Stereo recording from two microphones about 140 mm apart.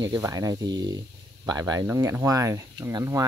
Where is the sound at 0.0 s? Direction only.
25° right (ahead or behind).